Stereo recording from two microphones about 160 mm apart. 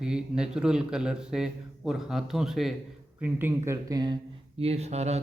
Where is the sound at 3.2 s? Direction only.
10° right (ahead or behind).